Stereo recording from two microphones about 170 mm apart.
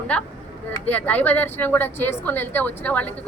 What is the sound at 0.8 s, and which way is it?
A woman's voice, 10° left (ahead or behind).